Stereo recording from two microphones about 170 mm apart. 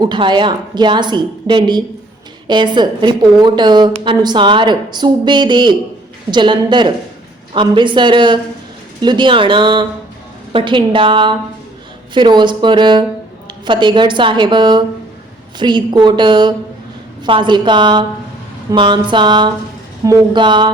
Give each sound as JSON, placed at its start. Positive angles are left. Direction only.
{"t": 0.0, "sound": "speech", "side_deg": -25}